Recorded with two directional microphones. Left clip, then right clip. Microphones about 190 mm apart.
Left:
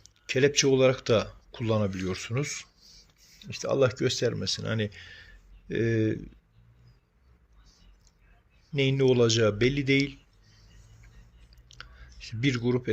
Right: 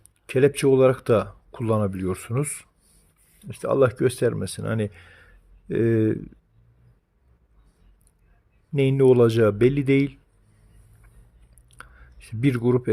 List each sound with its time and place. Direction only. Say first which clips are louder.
0.3 s speech: right 5 dB; 50° right (ahead or behind)
8.7 s speech: right 6 dB; 45° right (ahead or behind)
11.8 s a sound: even; 50° right (ahead or behind)